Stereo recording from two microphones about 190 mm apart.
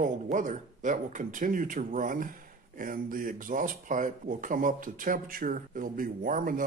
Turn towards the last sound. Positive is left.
turn(degrees=-45)  # may be behind; listen again after turning